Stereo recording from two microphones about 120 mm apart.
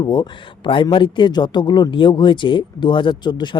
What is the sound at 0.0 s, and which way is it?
A man's voice, 40° left (ahead or behind).